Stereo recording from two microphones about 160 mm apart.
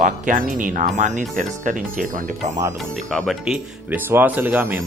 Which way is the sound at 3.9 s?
10° right (ahead or behind).